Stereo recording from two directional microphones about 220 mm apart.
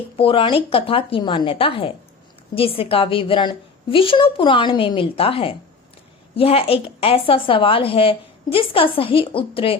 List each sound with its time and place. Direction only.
0.2 s a woman's voice: 25° left (ahead or behind)